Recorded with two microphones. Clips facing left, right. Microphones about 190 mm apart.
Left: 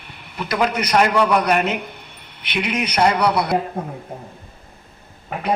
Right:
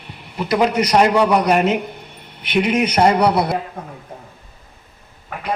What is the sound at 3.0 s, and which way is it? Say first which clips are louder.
Speech: right 2 dB; 30° right (ahead or behind).